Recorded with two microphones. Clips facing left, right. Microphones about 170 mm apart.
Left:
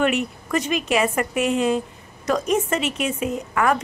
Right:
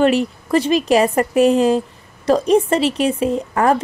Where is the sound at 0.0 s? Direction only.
30° right (ahead or behind).